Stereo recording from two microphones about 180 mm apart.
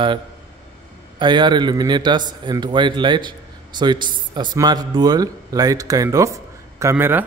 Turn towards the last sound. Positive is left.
turn(degrees=-10)  # may be behind; listen again after turning